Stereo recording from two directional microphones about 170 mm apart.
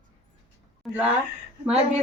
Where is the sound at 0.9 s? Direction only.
10° right (ahead or behind).